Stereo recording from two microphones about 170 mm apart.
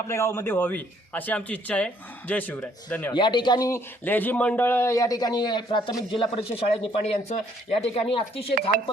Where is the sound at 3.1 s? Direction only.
30° left (ahead or behind).